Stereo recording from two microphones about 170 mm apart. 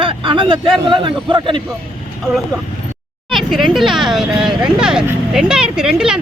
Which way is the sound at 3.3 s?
Centre (ahead or behind).